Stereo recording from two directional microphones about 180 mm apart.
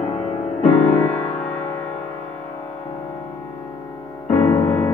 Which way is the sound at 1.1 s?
5° left (ahead or behind).